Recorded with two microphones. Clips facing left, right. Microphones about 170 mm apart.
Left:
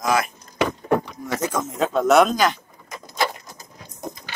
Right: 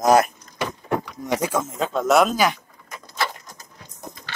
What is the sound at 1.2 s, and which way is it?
Speech, 15° right (ahead or behind).